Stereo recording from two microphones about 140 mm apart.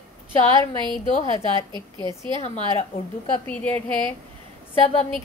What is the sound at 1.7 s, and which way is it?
Speech, 35° right (ahead or behind).